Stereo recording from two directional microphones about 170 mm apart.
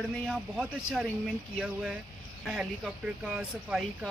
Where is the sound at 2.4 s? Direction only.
5° right (ahead or behind).